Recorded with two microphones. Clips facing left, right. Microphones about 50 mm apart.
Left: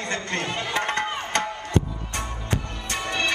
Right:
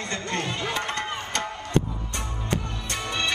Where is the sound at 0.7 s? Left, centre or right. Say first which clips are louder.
Left 3 dB; left.